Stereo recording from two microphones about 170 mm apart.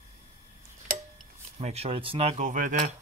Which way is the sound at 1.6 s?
35° right (ahead or behind).